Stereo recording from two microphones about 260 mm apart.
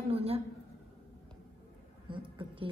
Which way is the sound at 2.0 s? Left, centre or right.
Centre.